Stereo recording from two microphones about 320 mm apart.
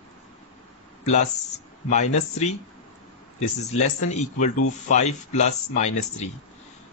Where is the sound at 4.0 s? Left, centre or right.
Left.